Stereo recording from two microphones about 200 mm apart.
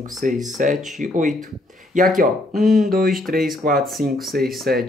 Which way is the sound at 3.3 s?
Centre (ahead or behind).